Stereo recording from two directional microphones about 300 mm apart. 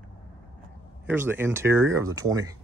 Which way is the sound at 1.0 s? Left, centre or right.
Centre.